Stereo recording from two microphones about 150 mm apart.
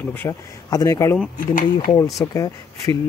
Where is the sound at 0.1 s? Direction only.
15° left (ahead or behind).